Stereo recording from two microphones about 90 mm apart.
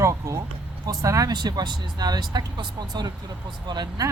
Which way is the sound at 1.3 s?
50° right (ahead or behind).